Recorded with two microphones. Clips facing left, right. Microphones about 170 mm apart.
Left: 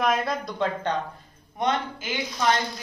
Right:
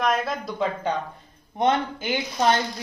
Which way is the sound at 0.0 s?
Centre (ahead or behind).